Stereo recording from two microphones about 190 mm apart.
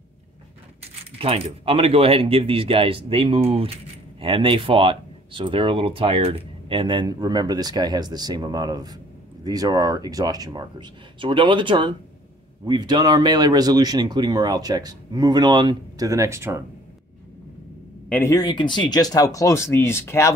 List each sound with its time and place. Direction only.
1.1 s speech: 30° right (ahead or behind); by 16.6 s 15° right (ahead or behind)
18.0 s speech: 10° left (ahead or behind)